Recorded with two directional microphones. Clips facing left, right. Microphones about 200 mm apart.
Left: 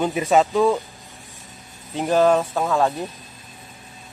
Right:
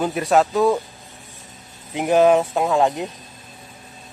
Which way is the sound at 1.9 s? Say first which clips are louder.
Right 2 dB; 15° right (ahead or behind).